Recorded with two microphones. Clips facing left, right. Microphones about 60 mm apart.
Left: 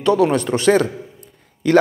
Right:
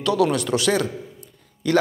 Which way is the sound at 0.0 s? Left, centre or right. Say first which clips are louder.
Left 4 dB; left.